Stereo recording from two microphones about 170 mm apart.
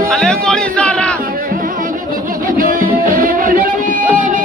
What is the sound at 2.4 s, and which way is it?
Music, 55° right (ahead or behind).